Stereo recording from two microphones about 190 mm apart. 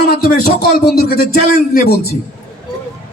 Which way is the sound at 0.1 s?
50° left (ahead or behind).